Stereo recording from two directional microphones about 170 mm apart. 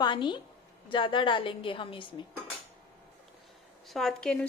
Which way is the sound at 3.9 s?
Centre (ahead or behind).